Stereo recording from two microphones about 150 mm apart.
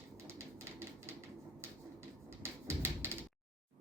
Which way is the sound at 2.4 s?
15° right (ahead or behind).